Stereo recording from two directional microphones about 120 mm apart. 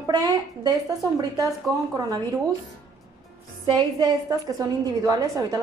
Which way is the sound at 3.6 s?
35° right (ahead or behind).